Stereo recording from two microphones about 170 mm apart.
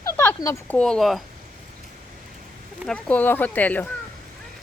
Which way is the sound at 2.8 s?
5° left (ahead or behind).